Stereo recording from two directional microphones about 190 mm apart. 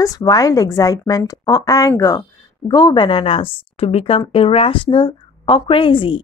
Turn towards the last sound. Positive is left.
turn(degrees=25)  # may be behind; listen again after turning